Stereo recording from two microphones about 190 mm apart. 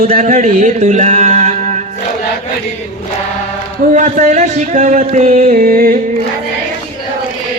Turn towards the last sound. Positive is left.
turn(degrees=-50)  # may be behind; listen again after turning